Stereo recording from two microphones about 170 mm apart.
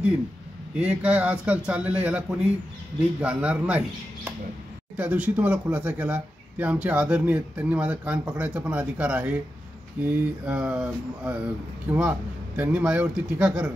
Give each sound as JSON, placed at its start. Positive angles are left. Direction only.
{"t": 0.7, "sound": "speech", "side_deg": -10}